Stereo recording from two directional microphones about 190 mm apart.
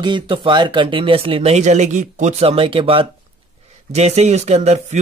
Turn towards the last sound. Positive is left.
turn(degrees=-35)  # may be behind; listen again after turning